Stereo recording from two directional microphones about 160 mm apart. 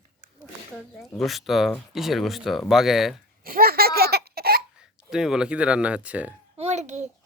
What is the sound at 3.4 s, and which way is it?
Baby laughter, 65° right (ahead or behind).